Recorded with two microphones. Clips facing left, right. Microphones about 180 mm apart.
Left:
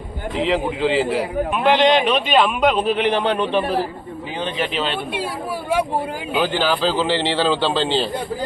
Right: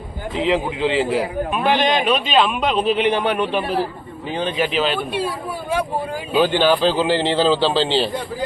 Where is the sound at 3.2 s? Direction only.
10° right (ahead or behind).